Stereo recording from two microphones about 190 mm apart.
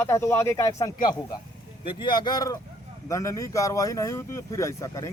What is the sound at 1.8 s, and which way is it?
Speech, 25° left (ahead or behind).